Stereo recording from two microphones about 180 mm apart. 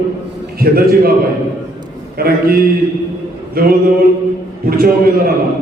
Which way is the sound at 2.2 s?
60° right (ahead or behind).